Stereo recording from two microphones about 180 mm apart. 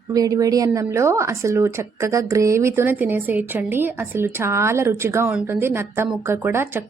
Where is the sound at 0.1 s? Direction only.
20° right (ahead or behind).